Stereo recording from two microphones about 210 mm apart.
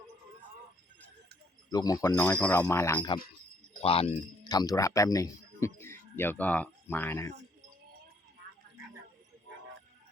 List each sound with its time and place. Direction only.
1.7 s speech: 15° left (ahead or behind)
3.8 s speech: 25° left (ahead or behind)
4.4 s speech: 15° left (ahead or behind)